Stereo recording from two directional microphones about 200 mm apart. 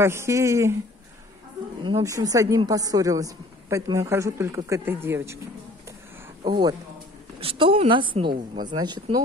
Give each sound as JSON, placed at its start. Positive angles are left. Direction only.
{"t": 0.0, "sound": "a woman's voice", "side_deg": -15}
{"t": 1.9, "sound": "a woman's voice", "side_deg": -15}
{"t": 6.4, "sound": "speech", "side_deg": -20}